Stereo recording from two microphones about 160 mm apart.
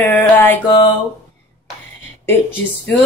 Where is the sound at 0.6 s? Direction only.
30° left (ahead or behind).